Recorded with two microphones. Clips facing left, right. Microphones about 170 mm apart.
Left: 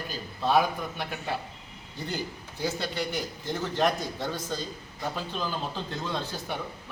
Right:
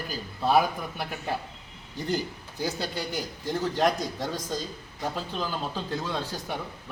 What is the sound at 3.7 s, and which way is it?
Speech, 10° right (ahead or behind).